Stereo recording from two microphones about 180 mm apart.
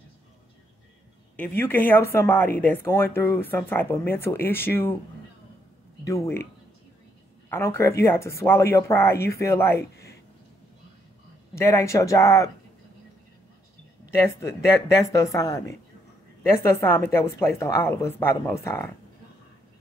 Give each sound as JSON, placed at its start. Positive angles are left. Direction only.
{"t": 1.3, "sound": "speech", "side_deg": 10}
{"t": 6.0, "sound": "speech", "side_deg": 15}
{"t": 7.4, "sound": "speech", "side_deg": 15}
{"t": 11.5, "sound": "speech", "side_deg": 15}
{"t": 14.2, "sound": "speech", "side_deg": 15}